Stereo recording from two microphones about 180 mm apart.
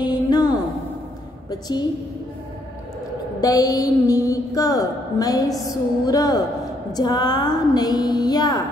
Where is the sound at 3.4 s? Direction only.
20° left (ahead or behind).